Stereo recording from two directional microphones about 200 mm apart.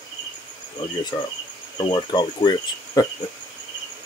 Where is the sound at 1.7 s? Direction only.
20° left (ahead or behind).